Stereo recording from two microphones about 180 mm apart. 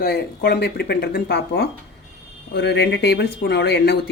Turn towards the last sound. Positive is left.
turn(degrees=65)  # may be behind; listen again after turning